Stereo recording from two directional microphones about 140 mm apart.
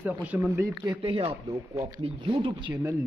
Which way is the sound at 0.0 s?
10° right (ahead or behind).